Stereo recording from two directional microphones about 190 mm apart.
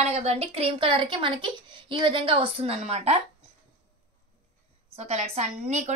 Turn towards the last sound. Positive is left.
turn(degrees=-35)  # may be behind; listen again after turning